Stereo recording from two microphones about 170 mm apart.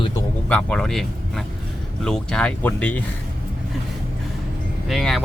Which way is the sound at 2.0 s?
5° left (ahead or behind).